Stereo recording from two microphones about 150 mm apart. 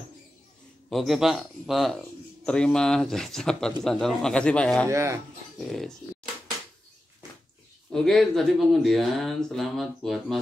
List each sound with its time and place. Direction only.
0.8 s speech: centre (ahead or behind)
4.8 s speech: 20° right (ahead or behind)
5.6 s speech: centre (ahead or behind)
7.2 s a sound: 25° right (ahead or behind)
7.9 s speech: centre (ahead or behind)